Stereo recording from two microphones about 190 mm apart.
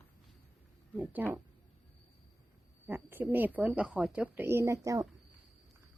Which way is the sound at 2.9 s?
10° right (ahead or behind).